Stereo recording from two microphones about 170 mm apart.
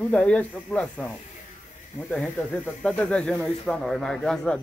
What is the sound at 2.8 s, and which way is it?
Speech, 5° left (ahead or behind).